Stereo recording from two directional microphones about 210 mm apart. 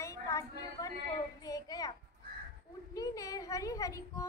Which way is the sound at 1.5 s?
15° left (ahead or behind).